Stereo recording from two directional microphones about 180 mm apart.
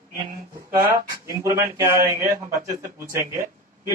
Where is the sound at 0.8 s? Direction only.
15° right (ahead or behind).